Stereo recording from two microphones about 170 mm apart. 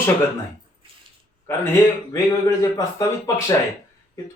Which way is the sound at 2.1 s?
20° left (ahead or behind).